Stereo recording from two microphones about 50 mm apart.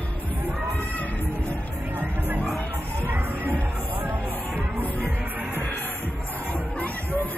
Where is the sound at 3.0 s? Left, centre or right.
Right.